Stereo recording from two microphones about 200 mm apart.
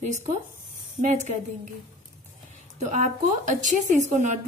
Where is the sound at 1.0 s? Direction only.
35° right (ahead or behind).